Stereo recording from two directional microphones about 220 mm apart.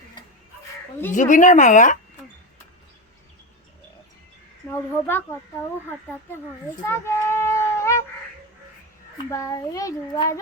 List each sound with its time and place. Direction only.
1.1 s a woman's voice: 35° left (ahead or behind)
4.7 s a child's voice: 10° left (ahead or behind)
6.8 s child singing: 10° left (ahead or behind)
9.3 s a child's voice: 15° left (ahead or behind)